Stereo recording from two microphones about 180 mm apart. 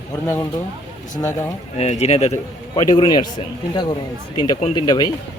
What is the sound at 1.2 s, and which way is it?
Speech, 15° left (ahead or behind).